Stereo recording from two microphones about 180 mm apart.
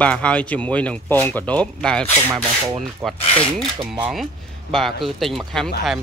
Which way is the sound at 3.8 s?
30° right (ahead or behind).